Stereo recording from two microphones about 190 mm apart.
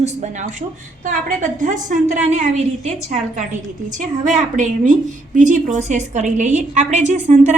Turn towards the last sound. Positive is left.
turn(degrees=-40)  # may be behind; listen again after turning